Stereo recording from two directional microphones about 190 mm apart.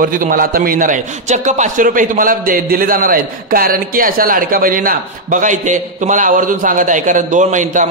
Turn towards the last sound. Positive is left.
turn(degrees=-40)  # may be behind; listen again after turning